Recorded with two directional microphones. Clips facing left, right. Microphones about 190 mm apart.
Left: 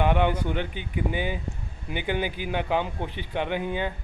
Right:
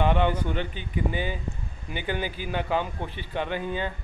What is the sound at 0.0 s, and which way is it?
Speech, 10° left (ahead or behind).